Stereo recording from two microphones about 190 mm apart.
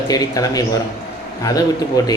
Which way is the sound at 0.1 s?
20° left (ahead or behind).